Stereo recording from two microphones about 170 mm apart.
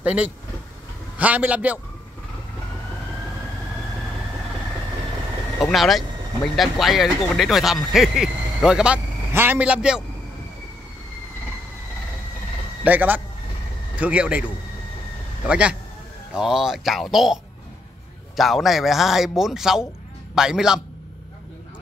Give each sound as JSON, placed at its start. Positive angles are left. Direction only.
{"t": 0.0, "sound": "a man's voice", "side_deg": -5}
{"t": 5.6, "sound": "speech", "side_deg": 0}
{"t": 12.8, "sound": "speech", "side_deg": -10}
{"t": 15.4, "sound": "a man's voice", "side_deg": -5}